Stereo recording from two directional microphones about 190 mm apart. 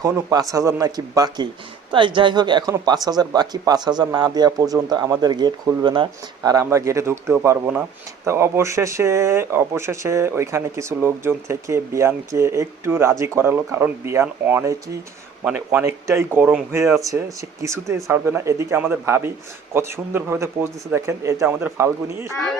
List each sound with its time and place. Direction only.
0.0 s speech: 20° right (ahead or behind)